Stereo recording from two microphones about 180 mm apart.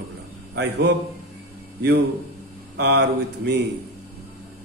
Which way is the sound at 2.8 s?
70° right (ahead or behind).